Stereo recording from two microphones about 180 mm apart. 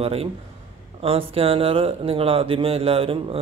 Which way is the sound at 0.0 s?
35° right (ahead or behind).